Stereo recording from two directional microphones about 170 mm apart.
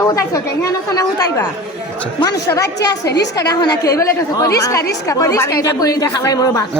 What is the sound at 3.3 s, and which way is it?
A woman's voice, 25° left (ahead or behind).